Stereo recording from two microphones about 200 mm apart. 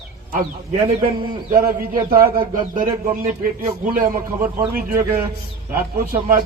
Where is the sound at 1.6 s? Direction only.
45° right (ahead or behind).